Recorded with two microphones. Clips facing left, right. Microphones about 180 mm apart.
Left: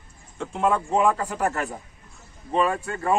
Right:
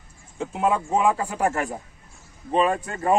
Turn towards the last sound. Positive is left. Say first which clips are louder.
# right 2 dB
turn(degrees=-20)  # may be behind; listen again after turning